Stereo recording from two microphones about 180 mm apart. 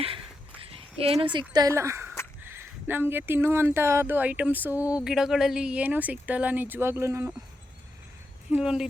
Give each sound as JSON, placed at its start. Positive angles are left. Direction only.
{"t": 0.7, "sound": "speech", "side_deg": -30}
{"t": 4.8, "sound": "a sound", "side_deg": 20}
{"t": 5.0, "sound": "speech", "side_deg": -5}
{"t": 8.4, "sound": "speech", "side_deg": -5}